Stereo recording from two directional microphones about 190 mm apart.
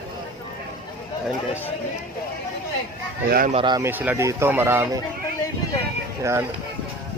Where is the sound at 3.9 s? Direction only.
10° right (ahead or behind).